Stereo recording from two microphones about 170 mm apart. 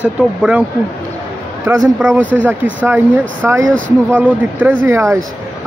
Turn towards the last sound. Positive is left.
turn(degrees=-15)  # may be behind; listen again after turning